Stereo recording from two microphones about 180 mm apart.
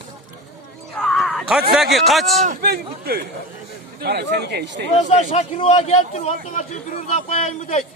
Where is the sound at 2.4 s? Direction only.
50° right (ahead or behind); by 4.9 s 75° right (ahead or behind).